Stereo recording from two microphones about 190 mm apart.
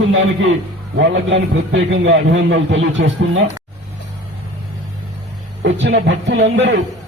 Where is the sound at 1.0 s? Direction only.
75° right (ahead or behind).